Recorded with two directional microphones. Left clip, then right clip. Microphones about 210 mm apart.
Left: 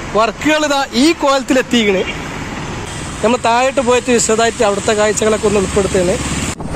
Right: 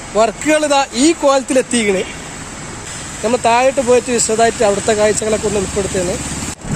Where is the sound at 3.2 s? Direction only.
5° left (ahead or behind).